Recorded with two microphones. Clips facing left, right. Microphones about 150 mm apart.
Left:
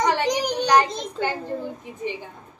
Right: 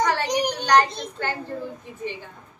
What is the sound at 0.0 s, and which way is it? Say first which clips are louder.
Child singing: left 1 dB; 20° left (ahead or behind).